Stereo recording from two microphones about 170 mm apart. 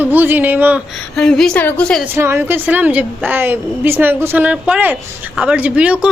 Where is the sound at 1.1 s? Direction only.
5° left (ahead or behind).